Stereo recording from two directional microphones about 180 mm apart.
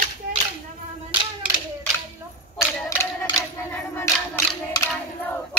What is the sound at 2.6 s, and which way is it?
Mechanisms, 15° left (ahead or behind).